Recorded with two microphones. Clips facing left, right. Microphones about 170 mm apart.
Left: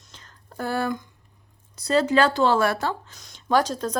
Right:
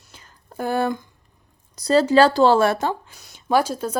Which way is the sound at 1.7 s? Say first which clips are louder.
Right 5 dB; 35° right (ahead or behind).